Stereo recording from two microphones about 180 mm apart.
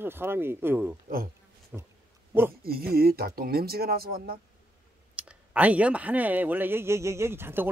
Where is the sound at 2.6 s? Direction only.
60° right (ahead or behind).